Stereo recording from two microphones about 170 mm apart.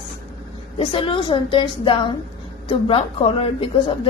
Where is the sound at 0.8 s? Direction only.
30° left (ahead or behind).